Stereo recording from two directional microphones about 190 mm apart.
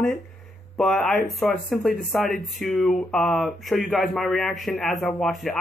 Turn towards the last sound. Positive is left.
turn(degrees=0)  # may be behind; listen again after turning